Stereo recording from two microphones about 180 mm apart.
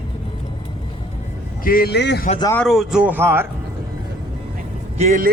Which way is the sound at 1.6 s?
55° left (ahead or behind).